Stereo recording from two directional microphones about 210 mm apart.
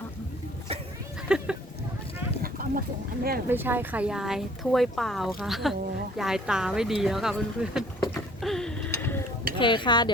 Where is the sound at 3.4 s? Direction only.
10° right (ahead or behind).